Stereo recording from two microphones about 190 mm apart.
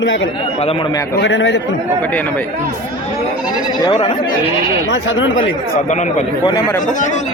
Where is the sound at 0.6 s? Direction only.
30° left (ahead or behind).